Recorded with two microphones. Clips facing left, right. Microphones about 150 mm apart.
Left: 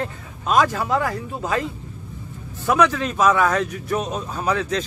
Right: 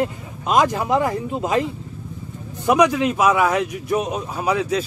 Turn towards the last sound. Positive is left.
turn(degrees=-10)  # may be behind; listen again after turning